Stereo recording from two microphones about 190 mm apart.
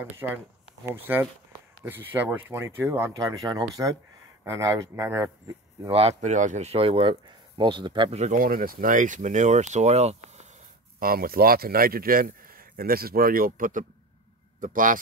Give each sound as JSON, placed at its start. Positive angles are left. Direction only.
{"t": 0.2, "sound": "speech", "side_deg": -10}
{"t": 5.9, "sound": "speech", "side_deg": -30}
{"t": 11.0, "sound": "a man's voice", "side_deg": -50}